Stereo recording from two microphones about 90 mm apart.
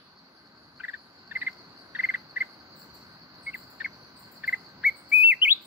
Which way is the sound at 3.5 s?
15° right (ahead or behind).